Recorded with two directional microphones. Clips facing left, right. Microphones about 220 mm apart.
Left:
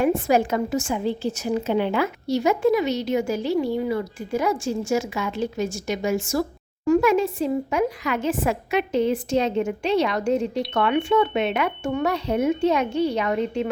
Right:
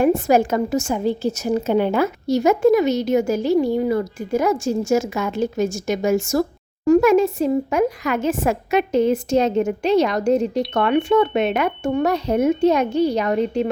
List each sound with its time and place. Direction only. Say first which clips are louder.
0.0 s a woman's voice: right 4 dB; 45° right (ahead or behind)